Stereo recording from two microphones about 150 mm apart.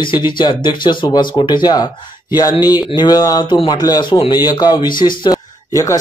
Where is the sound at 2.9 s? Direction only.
30° left (ahead or behind).